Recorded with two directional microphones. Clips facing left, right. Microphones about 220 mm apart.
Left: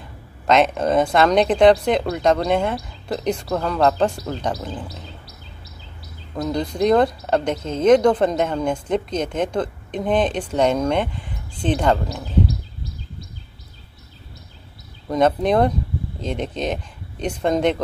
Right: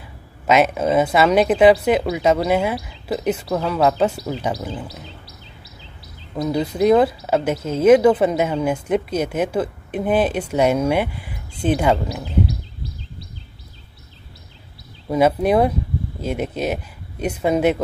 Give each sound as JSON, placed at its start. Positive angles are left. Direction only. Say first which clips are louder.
{"t": 0.5, "sound": "speech", "louder": "right 1 dB", "side_deg": -5}
{"t": 6.3, "sound": "speech", "louder": "right 2 dB", "side_deg": -5}
{"t": 15.0, "sound": "speech", "louder": "right 1 dB", "side_deg": -10}